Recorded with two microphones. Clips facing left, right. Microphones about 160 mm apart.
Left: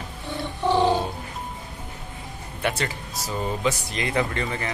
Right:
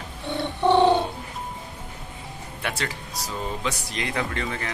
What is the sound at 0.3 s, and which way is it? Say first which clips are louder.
Music: right 3 dB; 65° right (ahead or behind).